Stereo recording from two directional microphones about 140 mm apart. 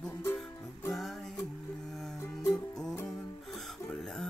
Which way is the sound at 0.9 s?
Centre (ahead or behind).